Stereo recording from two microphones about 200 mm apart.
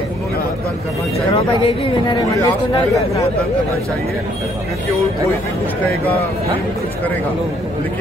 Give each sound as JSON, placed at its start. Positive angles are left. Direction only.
{"t": 1.3, "sound": "speech", "side_deg": 25}